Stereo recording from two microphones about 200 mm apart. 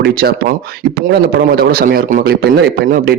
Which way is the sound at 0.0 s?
50° right (ahead or behind).